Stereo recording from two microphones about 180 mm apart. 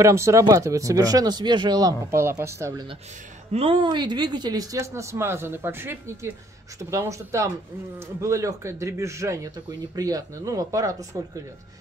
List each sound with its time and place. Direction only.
0.0 s speech: 15° right (ahead or behind)
3.5 s speech: 30° right (ahead or behind)